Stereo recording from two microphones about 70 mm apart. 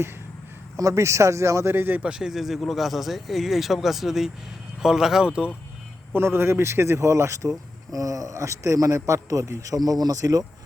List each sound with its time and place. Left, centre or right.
0.8 s a man's voice: right
1.7 s speech: right
2.0 s speech: centre
6.1 s a man's voice: right